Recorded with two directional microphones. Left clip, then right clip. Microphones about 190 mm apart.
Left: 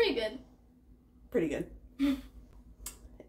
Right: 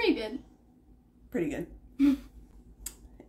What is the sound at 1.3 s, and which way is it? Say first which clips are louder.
Speech: left 1 dB; 20° left (ahead or behind).